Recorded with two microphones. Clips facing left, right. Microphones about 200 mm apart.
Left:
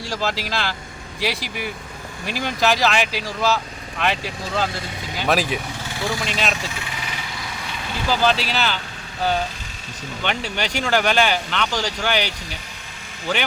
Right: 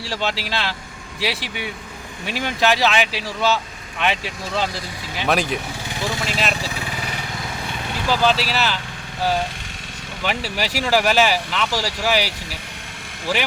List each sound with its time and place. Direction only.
0.0 s speech: centre (ahead or behind)
8.0 s speech: centre (ahead or behind)
10.2 s speech: 5° right (ahead or behind)